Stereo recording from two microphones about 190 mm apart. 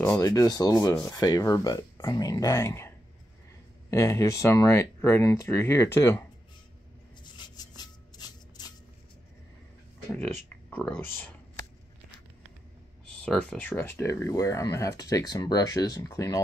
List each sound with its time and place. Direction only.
0.0 s speech: 15° left (ahead or behind)
3.9 s speech: 15° left (ahead or behind)
7.3 s a sound: 25° left (ahead or behind)
10.1 s speech: 10° left (ahead or behind)
13.2 s speech: 5° left (ahead or behind)